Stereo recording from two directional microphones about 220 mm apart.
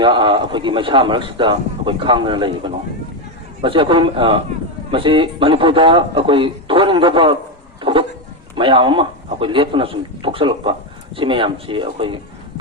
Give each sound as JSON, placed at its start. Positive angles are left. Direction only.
{"t": 0.0, "sound": "a man's voice", "side_deg": -20}
{"t": 7.8, "sound": "a sound", "side_deg": -20}
{"t": 8.5, "sound": "a man's voice", "side_deg": -20}